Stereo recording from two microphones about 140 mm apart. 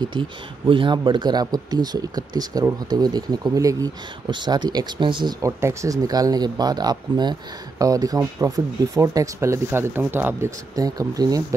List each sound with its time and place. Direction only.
0.0 s speech: 35° right (ahead or behind)
5.4 s speech: 20° right (ahead or behind)